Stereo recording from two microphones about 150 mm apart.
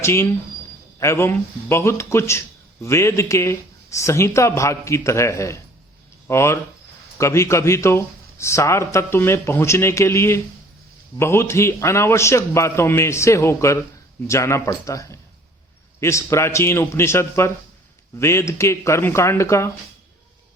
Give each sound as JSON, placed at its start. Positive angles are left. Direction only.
{"t": 0.0, "sound": "a man's voice", "side_deg": 15}